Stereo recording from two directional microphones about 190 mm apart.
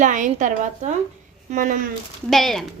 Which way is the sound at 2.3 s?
Centre (ahead or behind).